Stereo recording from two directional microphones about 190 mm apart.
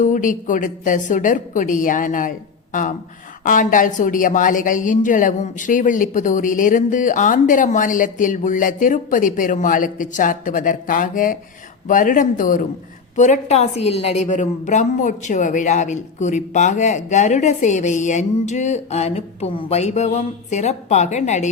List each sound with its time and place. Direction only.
0.0 s speech: 45° left (ahead or behind)
3.4 s a woman's voice: 45° left (ahead or behind)